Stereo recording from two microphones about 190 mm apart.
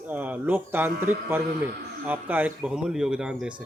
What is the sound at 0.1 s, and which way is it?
A man's voice, 10° right (ahead or behind).